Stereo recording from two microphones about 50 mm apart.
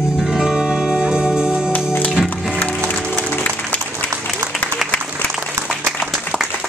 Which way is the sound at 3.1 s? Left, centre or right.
Left.